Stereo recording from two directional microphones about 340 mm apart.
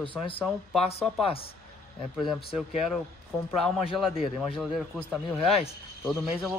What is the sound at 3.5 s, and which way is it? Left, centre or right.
A man's voice, centre.